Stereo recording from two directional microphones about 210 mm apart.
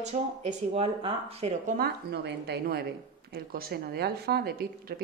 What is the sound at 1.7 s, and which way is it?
A woman's voice, 50° right (ahead or behind).